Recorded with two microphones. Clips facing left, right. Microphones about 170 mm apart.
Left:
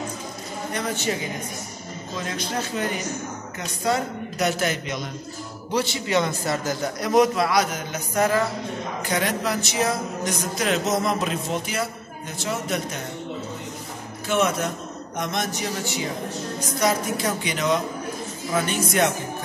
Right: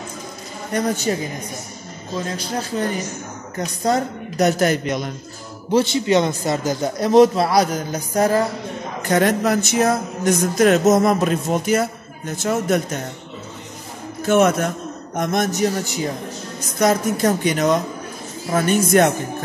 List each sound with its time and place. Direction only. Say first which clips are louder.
0.7 s a woman's voice: right 7 dB; 40° right (ahead or behind)
2.2 s a woman's voice: left 1 dB; 35° right (ahead or behind)
5.7 s speech: right 7 dB; 25° right (ahead or behind)
9.0 s music: right 8 dB; 50° right (ahead or behind)
14.2 s music: right 7 dB; 50° right (ahead or behind)